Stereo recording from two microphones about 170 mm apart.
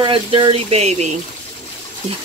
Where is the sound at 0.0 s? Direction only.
30° right (ahead or behind).